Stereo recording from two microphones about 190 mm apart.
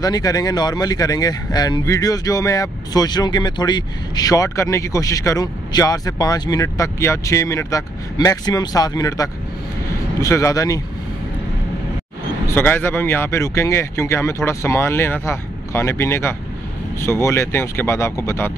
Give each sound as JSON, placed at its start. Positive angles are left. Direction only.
{"t": 0.0, "sound": "speech", "side_deg": 20}
{"t": 12.4, "sound": "speech", "side_deg": 10}